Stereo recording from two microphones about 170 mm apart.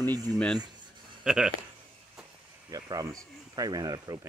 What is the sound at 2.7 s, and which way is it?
Speech, 20° right (ahead or behind).